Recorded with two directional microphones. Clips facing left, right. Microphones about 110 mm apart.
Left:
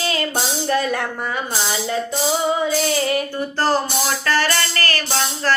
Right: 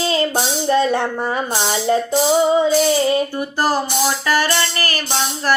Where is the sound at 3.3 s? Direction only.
10° right (ahead or behind).